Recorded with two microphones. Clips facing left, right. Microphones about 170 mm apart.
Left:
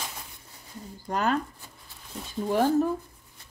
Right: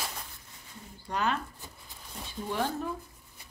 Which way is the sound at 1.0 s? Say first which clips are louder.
Left 4 dB; 45° left (ahead or behind).